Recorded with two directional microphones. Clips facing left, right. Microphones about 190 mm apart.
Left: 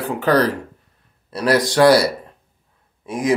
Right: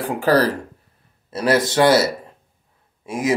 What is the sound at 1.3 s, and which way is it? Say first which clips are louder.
Speech: left 1 dB; 25° right (ahead or behind).